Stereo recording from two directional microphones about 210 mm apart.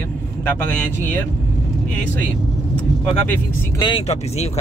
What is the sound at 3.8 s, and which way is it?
Speech, 30° left (ahead or behind).